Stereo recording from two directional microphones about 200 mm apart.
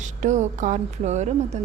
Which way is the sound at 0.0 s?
35° right (ahead or behind).